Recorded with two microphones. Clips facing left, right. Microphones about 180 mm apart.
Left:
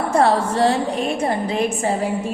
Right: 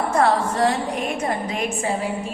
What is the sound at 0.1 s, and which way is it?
A woman's voice, 30° left (ahead or behind).